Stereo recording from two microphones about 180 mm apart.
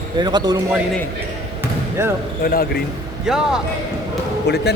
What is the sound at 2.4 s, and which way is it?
Speech, 55° left (ahead or behind).